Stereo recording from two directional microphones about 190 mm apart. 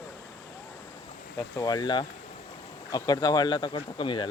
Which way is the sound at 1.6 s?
20° left (ahead or behind).